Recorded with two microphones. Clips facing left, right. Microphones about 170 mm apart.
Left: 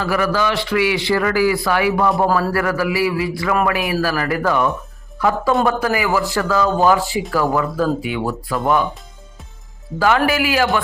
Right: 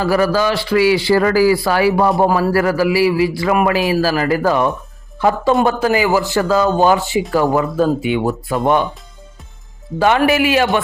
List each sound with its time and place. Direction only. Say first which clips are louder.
0.0 s a man's voice: right 4 dB; 35° right (ahead or behind)
2.2 s a man's voice: right 3 dB; 20° right (ahead or behind)
10.2 s a man's voice: right 3 dB; 25° right (ahead or behind)